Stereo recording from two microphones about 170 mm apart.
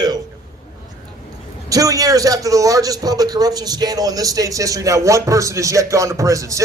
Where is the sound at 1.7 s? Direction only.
20° right (ahead or behind).